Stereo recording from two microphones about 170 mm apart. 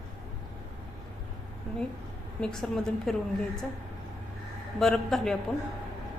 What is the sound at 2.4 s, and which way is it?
Speech, 5° left (ahead or behind).